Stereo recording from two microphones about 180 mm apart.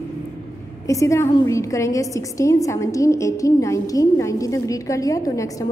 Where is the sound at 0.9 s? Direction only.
15° left (ahead or behind).